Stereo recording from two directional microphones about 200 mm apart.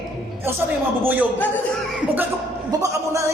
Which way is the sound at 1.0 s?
10° right (ahead or behind).